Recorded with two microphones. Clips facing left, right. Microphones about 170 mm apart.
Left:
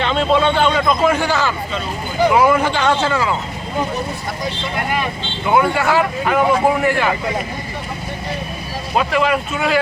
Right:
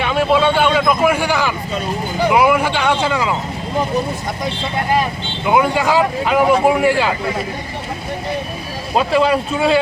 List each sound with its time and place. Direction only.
0.0 s speech: 10° right (ahead or behind)
5.5 s speech: 15° right (ahead or behind)
9.0 s speech: 30° right (ahead or behind)